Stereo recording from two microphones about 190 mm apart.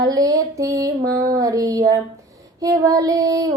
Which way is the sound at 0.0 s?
20° right (ahead or behind).